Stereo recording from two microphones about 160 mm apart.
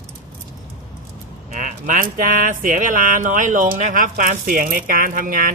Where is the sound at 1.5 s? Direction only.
55° right (ahead or behind).